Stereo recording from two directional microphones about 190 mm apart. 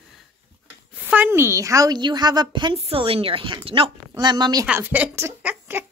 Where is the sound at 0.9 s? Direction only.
10° right (ahead or behind).